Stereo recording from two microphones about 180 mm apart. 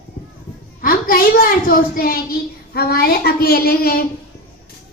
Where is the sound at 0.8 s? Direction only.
55° left (ahead or behind).